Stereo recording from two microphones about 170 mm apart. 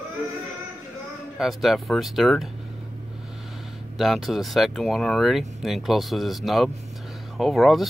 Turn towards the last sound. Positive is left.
turn(degrees=0)  # may be behind; listen again after turning